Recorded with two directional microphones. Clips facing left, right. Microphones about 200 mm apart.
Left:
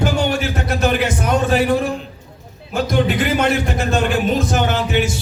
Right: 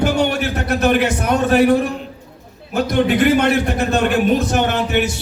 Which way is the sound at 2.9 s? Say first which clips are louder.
Right 4 dB; 60° right (ahead or behind).